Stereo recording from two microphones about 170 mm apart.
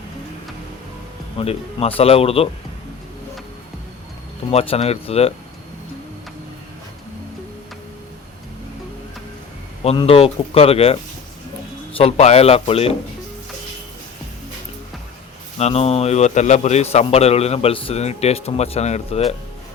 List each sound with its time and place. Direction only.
1.4 s a man's voice: 35° left (ahead or behind)
4.5 s a man's voice: 35° left (ahead or behind)
9.8 s a man's voice: 35° left (ahead or behind)
11.9 s a man's voice: 40° left (ahead or behind)
15.5 s a man's voice: 40° left (ahead or behind)